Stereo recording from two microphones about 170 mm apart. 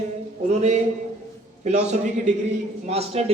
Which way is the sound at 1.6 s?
40° right (ahead or behind).